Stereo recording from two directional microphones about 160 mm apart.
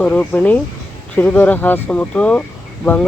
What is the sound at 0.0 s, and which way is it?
Speech, 10° left (ahead or behind).